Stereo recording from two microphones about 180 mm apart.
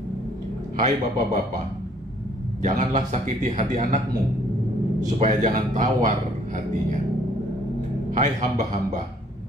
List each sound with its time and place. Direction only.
0.7 s a man's voice: 45° right (ahead or behind)
2.6 s speech: 40° right (ahead or behind)
5.2 s speech: 40° right (ahead or behind)
8.1 s a man's voice: 45° right (ahead or behind)